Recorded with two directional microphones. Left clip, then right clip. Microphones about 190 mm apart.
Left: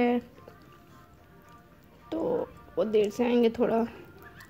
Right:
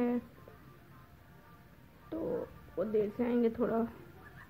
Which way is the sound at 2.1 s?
20° left (ahead or behind).